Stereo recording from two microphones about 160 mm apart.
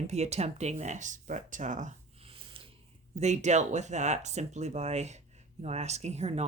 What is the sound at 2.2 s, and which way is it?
Snort, 35° right (ahead or behind).